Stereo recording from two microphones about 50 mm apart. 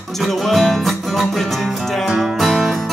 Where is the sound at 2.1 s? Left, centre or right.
Centre.